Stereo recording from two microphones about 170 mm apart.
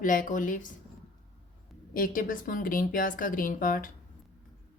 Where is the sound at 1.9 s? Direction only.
55° left (ahead or behind).